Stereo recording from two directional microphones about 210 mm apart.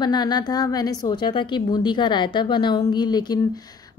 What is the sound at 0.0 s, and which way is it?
A woman's voice, 20° left (ahead or behind).